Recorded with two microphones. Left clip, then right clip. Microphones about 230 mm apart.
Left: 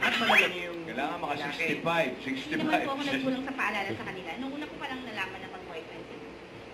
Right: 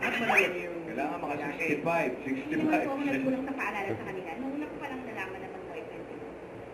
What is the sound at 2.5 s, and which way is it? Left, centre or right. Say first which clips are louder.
Speech: even; centre.